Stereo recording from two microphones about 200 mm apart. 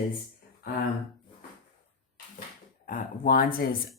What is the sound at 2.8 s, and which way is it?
Speech, 45° left (ahead or behind).